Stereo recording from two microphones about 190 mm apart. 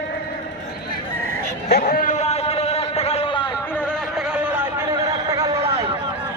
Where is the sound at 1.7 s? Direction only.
50° left (ahead or behind); by 3.4 s 30° left (ahead or behind).